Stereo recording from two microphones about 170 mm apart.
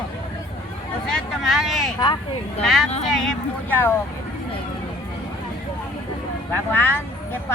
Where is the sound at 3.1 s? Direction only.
5° left (ahead or behind).